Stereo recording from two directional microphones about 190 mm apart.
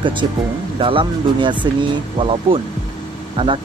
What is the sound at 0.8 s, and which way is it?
Speech, 25° right (ahead or behind).